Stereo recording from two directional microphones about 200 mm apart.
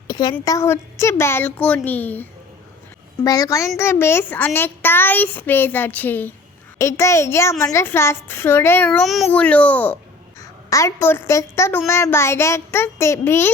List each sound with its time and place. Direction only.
0.1 s a woman's voice: 20° left (ahead or behind)
3.2 s a woman's voice: 15° left (ahead or behind)
9.0 s a woman's voice: centre (ahead or behind)